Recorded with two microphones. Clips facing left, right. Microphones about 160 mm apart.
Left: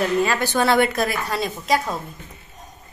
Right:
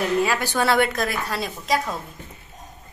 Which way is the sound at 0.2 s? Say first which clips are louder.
Left 2 dB; 10° right (ahead or behind).